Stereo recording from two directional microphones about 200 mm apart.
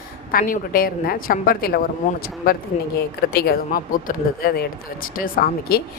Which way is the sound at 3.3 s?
50° left (ahead or behind).